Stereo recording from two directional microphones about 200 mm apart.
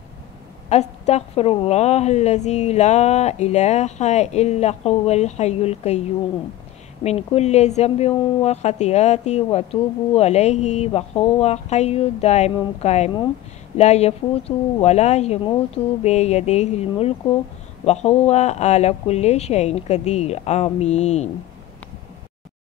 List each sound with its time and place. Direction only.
0.7 s a woman's voice: 35° left (ahead or behind)